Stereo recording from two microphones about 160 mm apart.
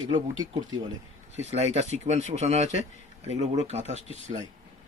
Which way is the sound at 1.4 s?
45° right (ahead or behind).